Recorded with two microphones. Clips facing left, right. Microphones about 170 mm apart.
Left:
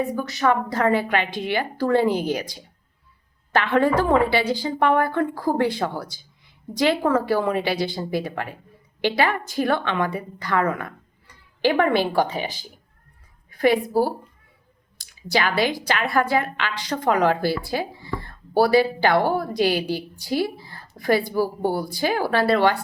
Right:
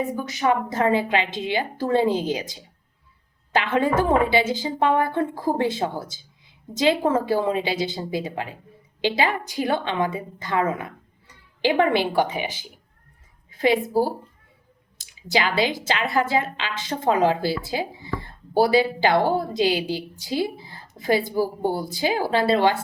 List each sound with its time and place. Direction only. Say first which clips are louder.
0.0 s a woman's voice: left 1 dB; 20° right (ahead or behind)
13.7 s a woman's voice: left 1 dB; 20° right (ahead or behind)
14.9 s drip: left 1 dB; 20° right (ahead or behind)
15.4 s a woman's voice: left 1 dB; 20° right (ahead or behind)